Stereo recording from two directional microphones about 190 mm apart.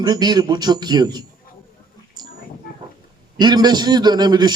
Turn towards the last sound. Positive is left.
turn(degrees=-20)  # may be behind; listen again after turning